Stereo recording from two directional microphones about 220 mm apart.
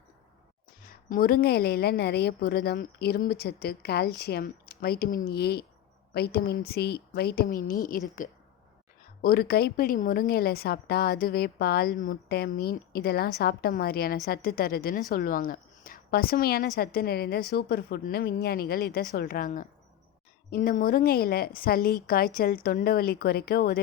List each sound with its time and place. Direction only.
0.9 s a woman's voice: 40° left (ahead or behind)
9.2 s a woman's voice: 45° left (ahead or behind)